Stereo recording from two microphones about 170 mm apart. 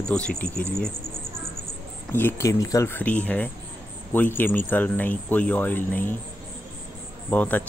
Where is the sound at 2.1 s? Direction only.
15° left (ahead or behind).